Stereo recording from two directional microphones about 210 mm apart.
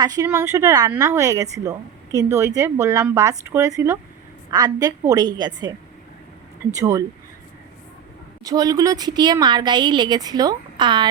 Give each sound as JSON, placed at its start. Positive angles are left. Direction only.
{"t": 0.0, "sound": "speech", "side_deg": -15}
{"t": 6.7, "sound": "speech", "side_deg": -15}
{"t": 8.4, "sound": "speech", "side_deg": -15}